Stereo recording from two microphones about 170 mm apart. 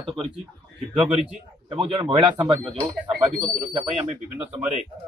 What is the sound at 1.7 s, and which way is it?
Speech, 30° right (ahead or behind).